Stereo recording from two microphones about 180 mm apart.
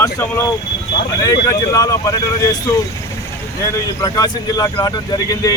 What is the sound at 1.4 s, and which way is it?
Speech, 20° left (ahead or behind).